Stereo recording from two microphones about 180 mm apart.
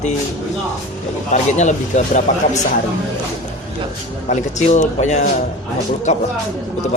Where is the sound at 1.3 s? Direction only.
40° left (ahead or behind).